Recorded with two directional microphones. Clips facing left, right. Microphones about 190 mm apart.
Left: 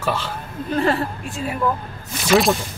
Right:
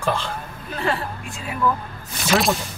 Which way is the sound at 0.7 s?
40° left (ahead or behind).